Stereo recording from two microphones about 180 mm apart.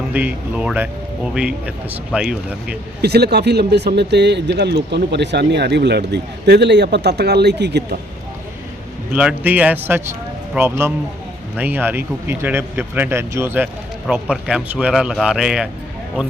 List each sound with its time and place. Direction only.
0.1 s a man's voice: 10° right (ahead or behind)
3.0 s speech: 65° right (ahead or behind)
9.1 s a man's voice: 10° right (ahead or behind)